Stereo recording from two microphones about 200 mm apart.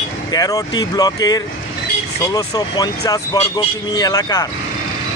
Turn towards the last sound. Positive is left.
turn(degrees=15)  # may be behind; listen again after turning